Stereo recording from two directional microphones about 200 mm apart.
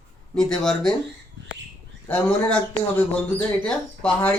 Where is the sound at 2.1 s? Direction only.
5° left (ahead or behind).